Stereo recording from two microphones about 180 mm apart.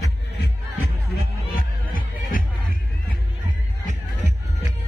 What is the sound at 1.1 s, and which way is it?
Music, 55° left (ahead or behind).